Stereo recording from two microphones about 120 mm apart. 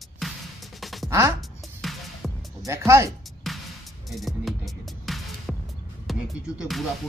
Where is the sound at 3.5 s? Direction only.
Centre (ahead or behind).